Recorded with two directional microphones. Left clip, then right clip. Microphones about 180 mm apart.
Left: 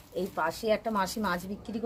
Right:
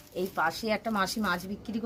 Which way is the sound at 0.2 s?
15° left (ahead or behind).